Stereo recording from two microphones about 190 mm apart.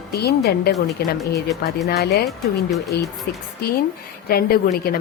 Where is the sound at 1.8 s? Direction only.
55° left (ahead or behind).